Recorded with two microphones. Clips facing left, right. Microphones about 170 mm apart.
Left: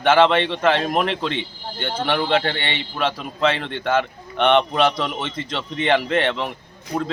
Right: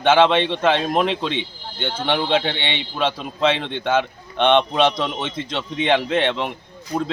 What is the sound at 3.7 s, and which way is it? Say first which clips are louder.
Speech: right 1 dB; centre (ahead or behind).